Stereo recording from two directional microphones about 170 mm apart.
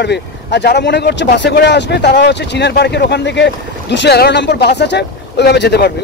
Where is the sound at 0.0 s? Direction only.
90° left.